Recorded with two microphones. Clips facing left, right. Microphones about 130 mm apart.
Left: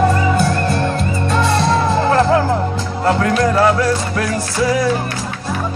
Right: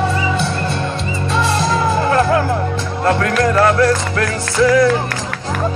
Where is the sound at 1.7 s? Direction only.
30° left (ahead or behind).